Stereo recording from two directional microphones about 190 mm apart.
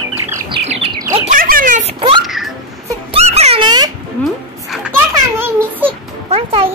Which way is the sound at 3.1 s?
35° right (ahead or behind).